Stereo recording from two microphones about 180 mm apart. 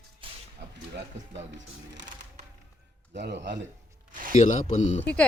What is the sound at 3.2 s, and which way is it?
Speech, 70° right (ahead or behind).